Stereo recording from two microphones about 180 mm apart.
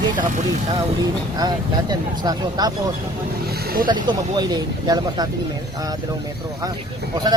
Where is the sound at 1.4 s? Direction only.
20° right (ahead or behind).